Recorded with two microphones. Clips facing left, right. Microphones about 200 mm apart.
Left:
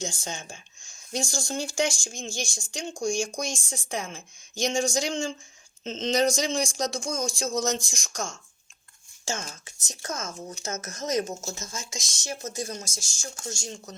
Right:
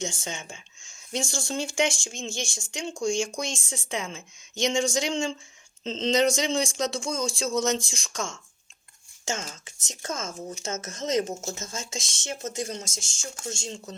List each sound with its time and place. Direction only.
0.0 s speech: 25° right (ahead or behind)
9.5 s speech: 20° right (ahead or behind)